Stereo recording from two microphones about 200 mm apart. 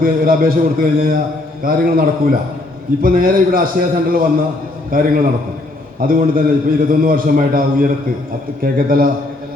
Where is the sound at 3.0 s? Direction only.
45° right (ahead or behind).